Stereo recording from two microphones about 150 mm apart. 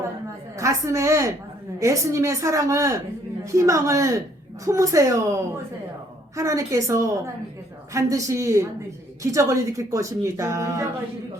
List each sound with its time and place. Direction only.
0.5 s speech: 20° right (ahead or behind)